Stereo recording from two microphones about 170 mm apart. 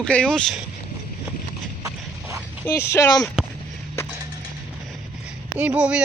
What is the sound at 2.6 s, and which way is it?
Speech, 15° left (ahead or behind).